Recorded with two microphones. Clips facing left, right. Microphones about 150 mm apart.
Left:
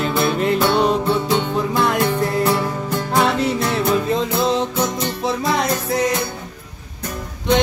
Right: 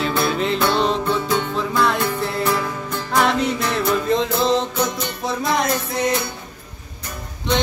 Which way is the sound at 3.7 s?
5° left (ahead or behind).